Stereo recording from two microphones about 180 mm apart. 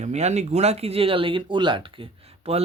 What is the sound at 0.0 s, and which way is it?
Speech, 40° right (ahead or behind).